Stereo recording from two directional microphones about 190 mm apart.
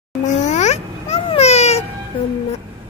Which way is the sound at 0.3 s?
40° left (ahead or behind).